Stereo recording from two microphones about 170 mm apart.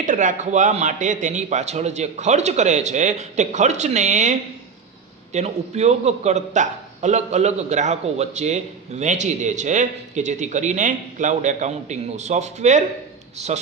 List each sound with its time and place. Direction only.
0.0 s a man's voice: 50° right (ahead or behind)